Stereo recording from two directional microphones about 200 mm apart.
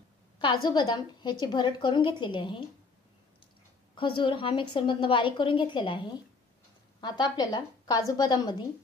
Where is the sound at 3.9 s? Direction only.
25° left (ahead or behind).